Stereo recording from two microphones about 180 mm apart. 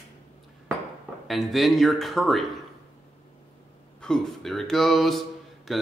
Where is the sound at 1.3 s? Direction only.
Centre (ahead or behind).